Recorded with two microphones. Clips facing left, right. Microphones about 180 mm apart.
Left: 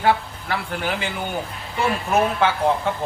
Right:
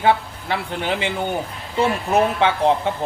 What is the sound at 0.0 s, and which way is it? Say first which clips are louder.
Speech: right 2 dB; 20° right (ahead or behind).